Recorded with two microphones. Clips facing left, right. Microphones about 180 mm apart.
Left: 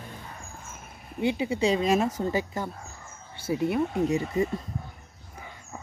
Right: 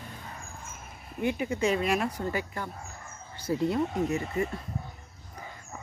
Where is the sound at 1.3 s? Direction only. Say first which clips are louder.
Left 2 dB; 20° left (ahead or behind).